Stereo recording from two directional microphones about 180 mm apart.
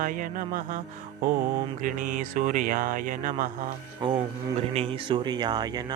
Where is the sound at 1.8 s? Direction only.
50° right (ahead or behind).